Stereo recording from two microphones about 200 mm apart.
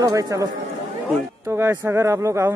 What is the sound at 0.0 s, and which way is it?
Speech, 15° right (ahead or behind).